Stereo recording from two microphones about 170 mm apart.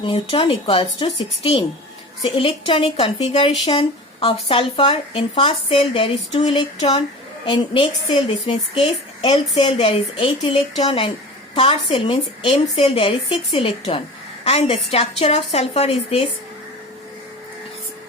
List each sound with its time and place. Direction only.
0.0 s speech: 30° left (ahead or behind)